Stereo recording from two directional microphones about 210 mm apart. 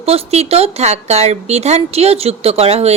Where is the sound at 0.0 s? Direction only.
30° right (ahead or behind).